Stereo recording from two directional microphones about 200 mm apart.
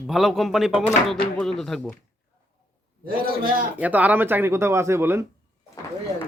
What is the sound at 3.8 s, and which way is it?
Speech, 10° right (ahead or behind).